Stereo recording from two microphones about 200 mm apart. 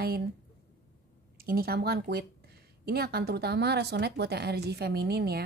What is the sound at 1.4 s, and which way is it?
Speech, 50° right (ahead or behind).